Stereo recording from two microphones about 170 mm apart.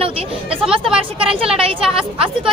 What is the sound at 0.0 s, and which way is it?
Speech, 35° right (ahead or behind).